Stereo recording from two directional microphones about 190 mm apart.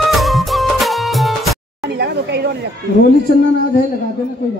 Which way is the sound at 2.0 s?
60° right (ahead or behind).